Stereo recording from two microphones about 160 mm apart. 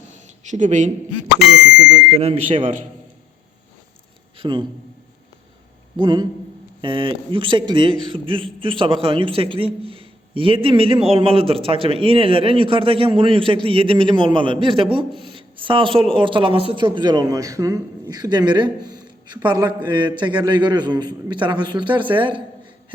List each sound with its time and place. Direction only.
0.5 s a man's voice: 50° right (ahead or behind)
2.0 s a man's voice: 40° right (ahead or behind)
4.4 s a man's voice: 30° right (ahead or behind)
6.0 s a man's voice: 30° right (ahead or behind)